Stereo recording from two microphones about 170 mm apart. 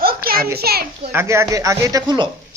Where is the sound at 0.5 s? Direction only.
65° right (ahead or behind).